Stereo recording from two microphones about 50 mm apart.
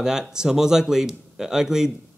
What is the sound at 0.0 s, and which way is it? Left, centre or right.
A man's voice, centre.